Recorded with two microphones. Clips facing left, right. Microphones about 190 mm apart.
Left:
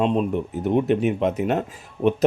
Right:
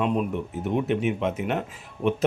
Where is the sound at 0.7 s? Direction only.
40° left (ahead or behind).